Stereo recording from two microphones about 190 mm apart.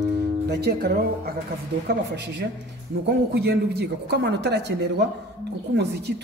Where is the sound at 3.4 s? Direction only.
60° right (ahead or behind).